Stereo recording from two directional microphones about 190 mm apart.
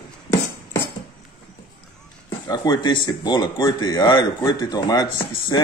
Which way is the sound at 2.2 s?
20° left (ahead or behind).